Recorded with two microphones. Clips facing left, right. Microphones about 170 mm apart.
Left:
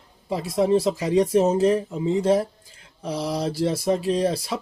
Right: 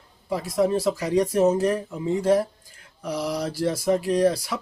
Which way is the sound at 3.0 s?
25° left (ahead or behind).